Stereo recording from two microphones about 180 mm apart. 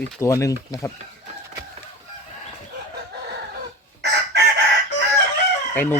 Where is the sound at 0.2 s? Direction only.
15° left (ahead or behind).